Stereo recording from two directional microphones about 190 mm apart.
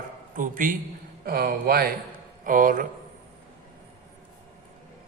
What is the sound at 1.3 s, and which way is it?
A man's voice, 55° right (ahead or behind).